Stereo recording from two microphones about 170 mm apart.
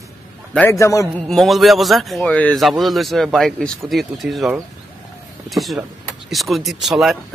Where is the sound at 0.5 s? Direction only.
15° left (ahead or behind).